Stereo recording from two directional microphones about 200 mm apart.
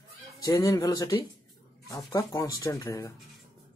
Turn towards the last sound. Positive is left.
turn(degrees=15)  # may be behind; listen again after turning